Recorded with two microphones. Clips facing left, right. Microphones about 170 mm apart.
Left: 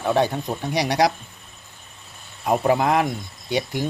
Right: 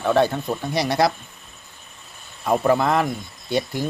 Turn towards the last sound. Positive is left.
turn(degrees=15)  # may be behind; listen again after turning